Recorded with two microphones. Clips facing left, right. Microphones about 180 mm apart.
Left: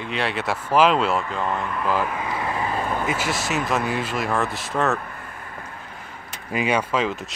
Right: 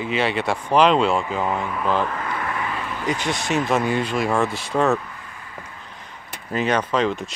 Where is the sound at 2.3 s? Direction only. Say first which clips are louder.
Left 2 dB; 25° left (ahead or behind); by 3.1 s 45° left (ahead or behind).